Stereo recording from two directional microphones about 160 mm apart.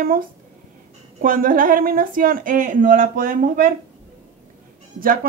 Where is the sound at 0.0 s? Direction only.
65° right (ahead or behind).